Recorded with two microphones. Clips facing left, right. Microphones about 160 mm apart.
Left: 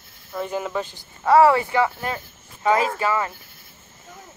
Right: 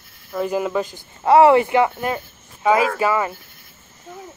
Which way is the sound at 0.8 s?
50° right (ahead or behind).